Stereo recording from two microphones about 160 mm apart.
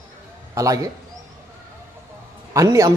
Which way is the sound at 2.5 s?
20° right (ahead or behind).